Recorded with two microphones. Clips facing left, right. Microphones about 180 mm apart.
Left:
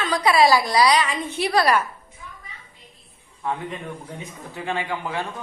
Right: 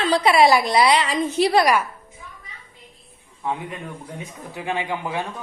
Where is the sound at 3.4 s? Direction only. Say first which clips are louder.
Even; 15° right (ahead or behind).